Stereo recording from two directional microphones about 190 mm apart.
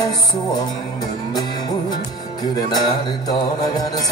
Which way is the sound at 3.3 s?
20° left (ahead or behind).